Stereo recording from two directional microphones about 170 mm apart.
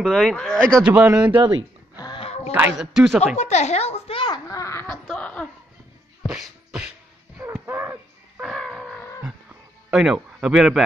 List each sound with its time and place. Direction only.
0.0 s speech: 5° left (ahead or behind)
0.8 s speech: 10° right (ahead or behind)
2.0 s a sound: 30° left (ahead or behind)
2.5 s speech: 5° right (ahead or behind)
3.3 s a child's voice: 40° left (ahead or behind); by 4.8 s 20° left (ahead or behind)
4.8 s a sound: 5° left (ahead or behind)
6.2 s beatboxing: centre (ahead or behind)
7.6 s music: 15° right (ahead or behind)
8.5 s a sound: centre (ahead or behind)
9.8 s speech: centre (ahead or behind)